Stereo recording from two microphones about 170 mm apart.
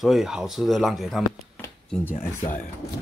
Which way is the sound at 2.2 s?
50° left (ahead or behind).